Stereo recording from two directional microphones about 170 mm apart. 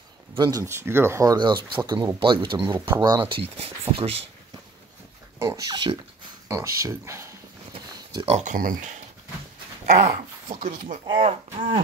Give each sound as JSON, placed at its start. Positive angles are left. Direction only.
{"t": 0.3, "sound": "a sound", "side_deg": -25}
{"t": 0.6, "sound": "speech", "side_deg": -15}
{"t": 5.4, "sound": "speech", "side_deg": -20}
{"t": 8.1, "sound": "speech", "side_deg": -30}
{"t": 8.4, "sound": "speech", "side_deg": -50}
{"t": 11.1, "sound": "speech", "side_deg": -30}